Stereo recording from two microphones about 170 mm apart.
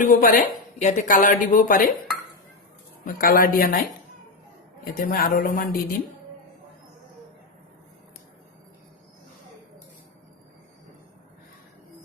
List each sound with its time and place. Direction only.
0.0 s a woman's voice: 55° left (ahead or behind)
3.0 s a man's voice: 60° left (ahead or behind)
4.9 s a man's voice: 55° left (ahead or behind)